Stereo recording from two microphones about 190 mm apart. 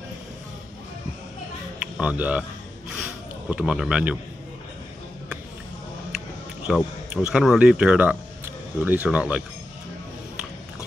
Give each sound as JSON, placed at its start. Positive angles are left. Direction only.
{"t": 1.8, "sound": "speech", "side_deg": -5}
{"t": 2.9, "sound": "a sound", "side_deg": -5}
{"t": 6.7, "sound": "speech", "side_deg": -5}